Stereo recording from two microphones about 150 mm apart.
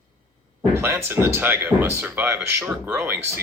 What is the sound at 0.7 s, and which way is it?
Speech, 15° right (ahead or behind).